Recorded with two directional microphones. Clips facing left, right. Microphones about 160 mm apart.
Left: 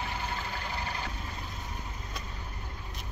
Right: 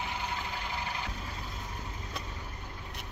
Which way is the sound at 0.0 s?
15° right (ahead or behind).